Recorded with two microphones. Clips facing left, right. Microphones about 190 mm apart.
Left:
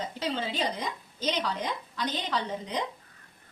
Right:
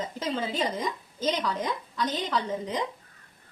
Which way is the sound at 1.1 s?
45° right (ahead or behind).